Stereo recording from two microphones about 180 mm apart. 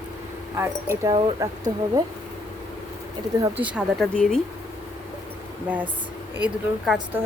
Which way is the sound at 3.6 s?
5° right (ahead or behind).